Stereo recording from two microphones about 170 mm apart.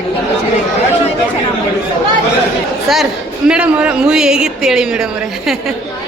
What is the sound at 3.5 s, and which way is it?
Speech, 5° right (ahead or behind).